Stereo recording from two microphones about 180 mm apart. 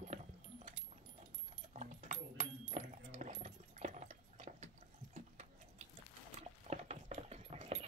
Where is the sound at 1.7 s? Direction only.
45° right (ahead or behind).